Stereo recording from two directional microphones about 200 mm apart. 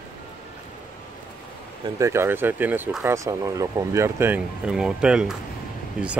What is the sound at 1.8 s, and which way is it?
Speech, 15° right (ahead or behind).